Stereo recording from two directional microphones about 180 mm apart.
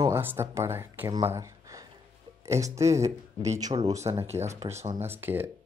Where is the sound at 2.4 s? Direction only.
15° right (ahead or behind).